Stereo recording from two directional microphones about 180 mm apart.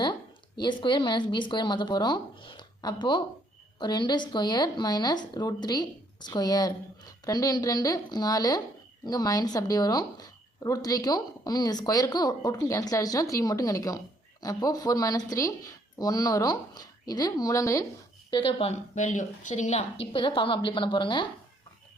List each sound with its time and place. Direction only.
0.0 s a woman's voice: 25° left (ahead or behind)
18.3 s speech: 30° left (ahead or behind)